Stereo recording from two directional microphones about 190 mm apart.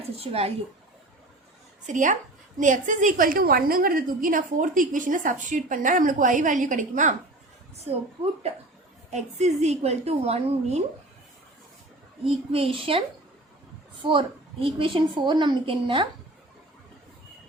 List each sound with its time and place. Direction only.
0.2 s a woman's voice: 30° right (ahead or behind)
1.9 s a woman's voice: 40° right (ahead or behind)
12.2 s a woman's voice: 30° right (ahead or behind)
14.1 s a woman's voice: 25° right (ahead or behind)